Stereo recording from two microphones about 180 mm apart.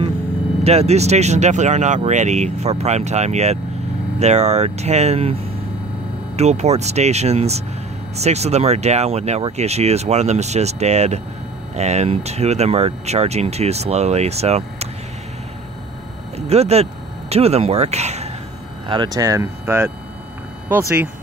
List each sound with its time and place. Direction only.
0.7 s speech: 35° right (ahead or behind)
16.3 s speech: 35° right (ahead or behind)
18.9 s speech: 25° right (ahead or behind)